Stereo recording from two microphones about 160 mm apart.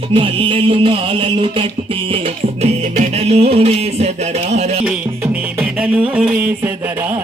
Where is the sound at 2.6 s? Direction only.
45° right (ahead or behind).